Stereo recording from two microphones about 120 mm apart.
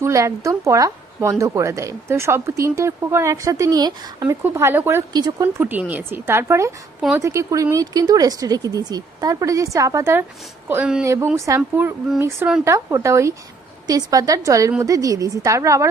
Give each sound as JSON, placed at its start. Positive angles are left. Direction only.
{"t": 0.0, "sound": "speech", "side_deg": -25}
{"t": 4.4, "sound": "speech", "side_deg": -20}
{"t": 5.1, "sound": "speech", "side_deg": -35}
{"t": 5.5, "sound": "speech", "side_deg": -15}